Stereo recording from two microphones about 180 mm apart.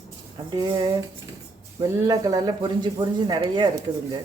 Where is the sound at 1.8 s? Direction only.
20° right (ahead or behind).